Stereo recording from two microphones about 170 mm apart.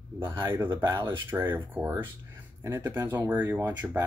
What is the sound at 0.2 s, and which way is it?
Speech, 15° right (ahead or behind).